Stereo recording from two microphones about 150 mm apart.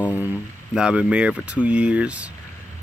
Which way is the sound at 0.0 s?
10° left (ahead or behind).